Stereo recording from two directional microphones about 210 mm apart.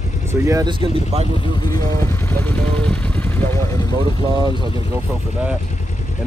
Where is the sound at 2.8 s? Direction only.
5° left (ahead or behind).